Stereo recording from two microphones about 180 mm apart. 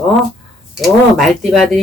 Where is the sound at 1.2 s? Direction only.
Centre (ahead or behind).